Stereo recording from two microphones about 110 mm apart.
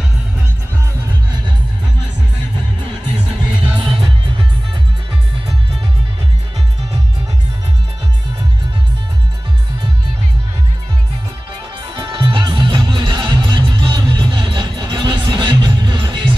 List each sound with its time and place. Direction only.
3.8 s music: 50° right (ahead or behind)
12.1 s music: 45° right (ahead or behind)